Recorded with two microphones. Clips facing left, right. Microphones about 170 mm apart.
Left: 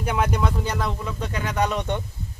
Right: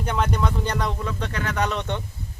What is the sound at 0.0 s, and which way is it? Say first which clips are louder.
Speech: left 1 dB; 10° left (ahead or behind).